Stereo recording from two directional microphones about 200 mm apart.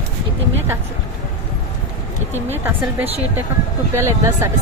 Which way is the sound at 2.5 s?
10° right (ahead or behind).